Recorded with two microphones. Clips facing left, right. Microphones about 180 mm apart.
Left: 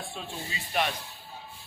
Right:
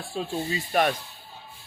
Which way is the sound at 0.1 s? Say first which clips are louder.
Right 9 dB; 40° right (ahead or behind).